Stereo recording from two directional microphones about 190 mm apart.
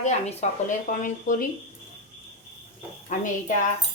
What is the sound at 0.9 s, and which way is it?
Speech, 45° left (ahead or behind).